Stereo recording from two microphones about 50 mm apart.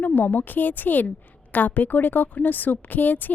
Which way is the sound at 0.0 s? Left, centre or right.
Left.